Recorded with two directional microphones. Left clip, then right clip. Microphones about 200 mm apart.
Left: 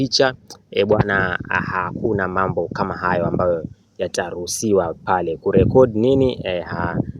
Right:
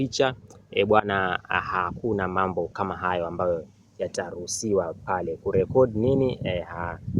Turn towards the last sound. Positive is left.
turn(degrees=35)  # may be behind; listen again after turning